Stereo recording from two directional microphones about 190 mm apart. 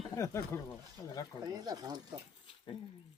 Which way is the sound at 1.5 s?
20° right (ahead or behind).